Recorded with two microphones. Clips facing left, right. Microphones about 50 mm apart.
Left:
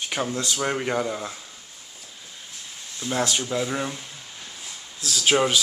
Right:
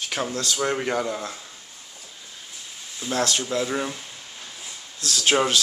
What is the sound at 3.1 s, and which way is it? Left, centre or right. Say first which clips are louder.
Speech: right 1 dB; centre.